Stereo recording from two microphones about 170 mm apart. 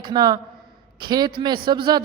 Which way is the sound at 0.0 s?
25° right (ahead or behind).